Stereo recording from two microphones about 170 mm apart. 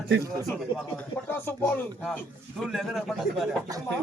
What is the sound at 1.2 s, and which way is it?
Speech, 15° left (ahead or behind).